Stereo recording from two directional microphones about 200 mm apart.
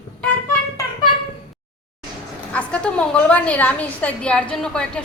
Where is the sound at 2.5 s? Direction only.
5° left (ahead or behind).